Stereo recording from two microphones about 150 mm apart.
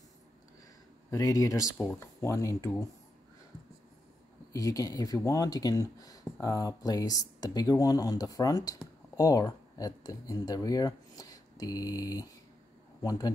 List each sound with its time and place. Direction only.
1.1 s speech: 20° left (ahead or behind)
4.5 s speech: 20° left (ahead or behind)